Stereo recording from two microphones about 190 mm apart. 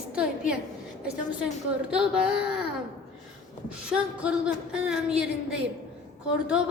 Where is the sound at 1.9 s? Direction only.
5° right (ahead or behind).